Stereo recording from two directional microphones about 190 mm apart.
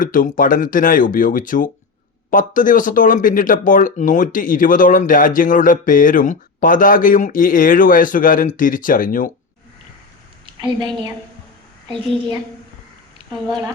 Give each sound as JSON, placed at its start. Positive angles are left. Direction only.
{"t": 0.0, "sound": "speech", "side_deg": 45}
{"t": 11.9, "sound": "a child's voice", "side_deg": -25}